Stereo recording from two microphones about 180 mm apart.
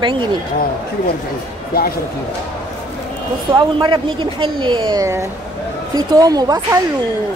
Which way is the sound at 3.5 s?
25° right (ahead or behind).